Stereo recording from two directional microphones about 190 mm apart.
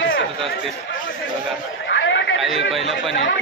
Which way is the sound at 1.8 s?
70° left (ahead or behind).